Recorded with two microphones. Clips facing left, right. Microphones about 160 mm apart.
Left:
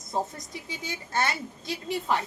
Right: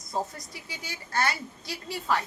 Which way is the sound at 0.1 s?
20° left (ahead or behind).